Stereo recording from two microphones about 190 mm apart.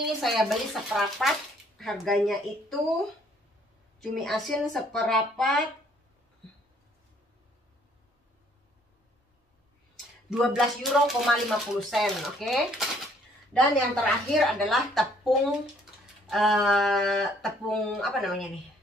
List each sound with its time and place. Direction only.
0.0 s speech: centre (ahead or behind)
4.0 s speech: centre (ahead or behind)
10.4 s speech: centre (ahead or behind)